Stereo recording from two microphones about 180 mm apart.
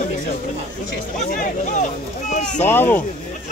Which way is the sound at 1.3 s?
45° left (ahead or behind).